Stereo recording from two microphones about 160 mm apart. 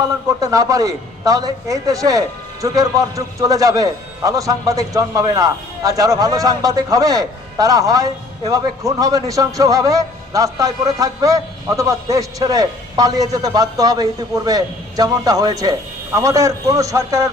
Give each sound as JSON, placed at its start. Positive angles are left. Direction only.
{"t": 0.3, "sound": "a man's voice", "side_deg": -20}